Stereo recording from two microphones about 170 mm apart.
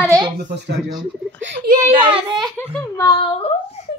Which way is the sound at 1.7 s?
60° right (ahead or behind).